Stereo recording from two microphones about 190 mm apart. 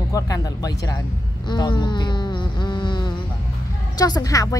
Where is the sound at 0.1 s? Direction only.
20° left (ahead or behind).